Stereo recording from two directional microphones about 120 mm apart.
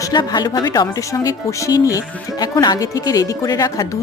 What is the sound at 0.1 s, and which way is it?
Speech, 35° left (ahead or behind).